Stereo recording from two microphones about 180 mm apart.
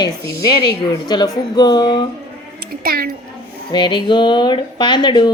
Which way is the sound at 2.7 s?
55° right (ahead or behind).